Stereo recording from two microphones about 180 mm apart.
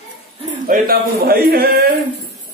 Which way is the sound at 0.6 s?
55° right (ahead or behind).